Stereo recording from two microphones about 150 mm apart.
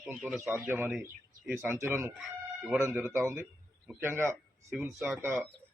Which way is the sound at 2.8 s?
15° right (ahead or behind).